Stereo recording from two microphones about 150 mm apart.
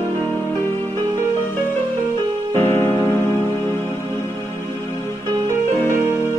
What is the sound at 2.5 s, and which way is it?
Music, 15° left (ahead or behind).